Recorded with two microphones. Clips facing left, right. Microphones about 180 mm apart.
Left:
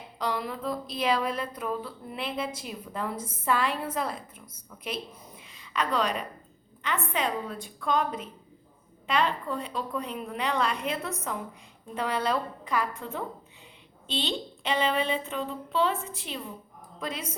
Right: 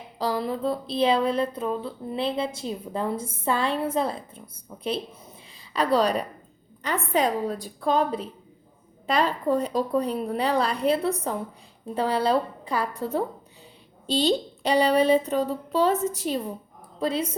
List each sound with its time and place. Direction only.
0.2 s speech: 30° right (ahead or behind)